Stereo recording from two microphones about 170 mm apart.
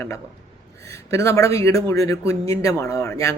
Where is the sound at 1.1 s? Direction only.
15° left (ahead or behind).